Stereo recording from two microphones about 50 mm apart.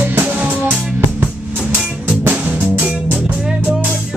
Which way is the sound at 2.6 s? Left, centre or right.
Right.